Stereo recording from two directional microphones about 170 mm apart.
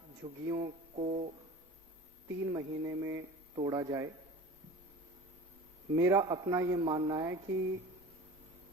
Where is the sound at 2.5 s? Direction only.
15° right (ahead or behind).